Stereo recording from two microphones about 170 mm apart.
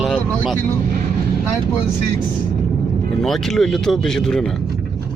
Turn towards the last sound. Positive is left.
turn(degrees=0)  # may be behind; listen again after turning